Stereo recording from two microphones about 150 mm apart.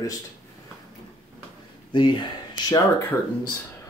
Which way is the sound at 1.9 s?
35° left (ahead or behind).